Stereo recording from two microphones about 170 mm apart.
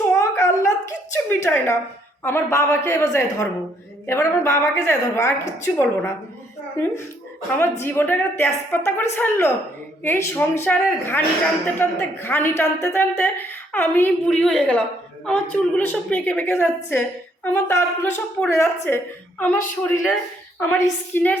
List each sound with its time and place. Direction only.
0.1 s a sound: 15° left (ahead or behind)
2.2 s a woman's voice: 15° left (ahead or behind)
7.6 s a woman's voice: 15° left (ahead or behind)